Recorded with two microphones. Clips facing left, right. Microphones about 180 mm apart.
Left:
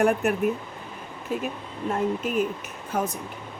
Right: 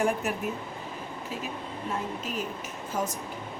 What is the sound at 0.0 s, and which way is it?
Speech, 60° left (ahead or behind).